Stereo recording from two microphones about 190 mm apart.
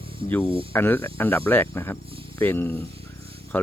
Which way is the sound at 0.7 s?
10° left (ahead or behind).